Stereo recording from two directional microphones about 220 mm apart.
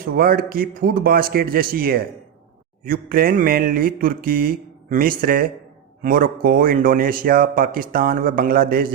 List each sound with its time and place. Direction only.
0.0 s speech: 40° right (ahead or behind)